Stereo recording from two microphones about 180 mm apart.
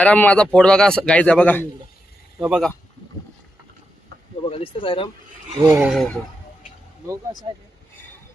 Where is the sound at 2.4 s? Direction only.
Centre (ahead or behind).